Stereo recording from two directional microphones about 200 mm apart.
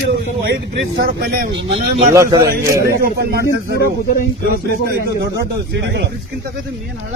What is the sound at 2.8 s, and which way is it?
Speech, 50° right (ahead or behind).